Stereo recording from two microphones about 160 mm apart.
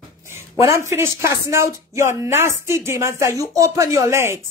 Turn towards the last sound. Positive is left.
turn(degrees=-15)  # may be behind; listen again after turning